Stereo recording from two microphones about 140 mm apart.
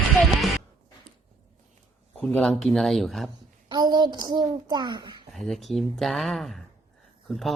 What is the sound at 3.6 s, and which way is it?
A child's voice, 30° right (ahead or behind).